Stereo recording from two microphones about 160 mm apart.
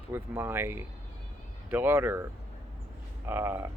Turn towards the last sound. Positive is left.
turn(degrees=-15)  # may be behind; listen again after turning